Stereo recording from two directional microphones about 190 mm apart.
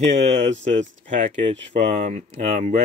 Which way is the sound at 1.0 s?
35° right (ahead or behind).